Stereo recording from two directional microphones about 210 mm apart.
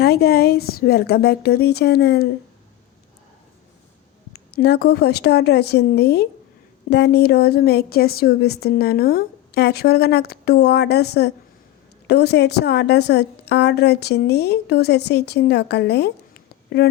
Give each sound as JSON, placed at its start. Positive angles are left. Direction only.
{"t": 0.0, "sound": "a woman's voice", "side_deg": 50}
{"t": 4.5, "sound": "a woman's voice", "side_deg": 50}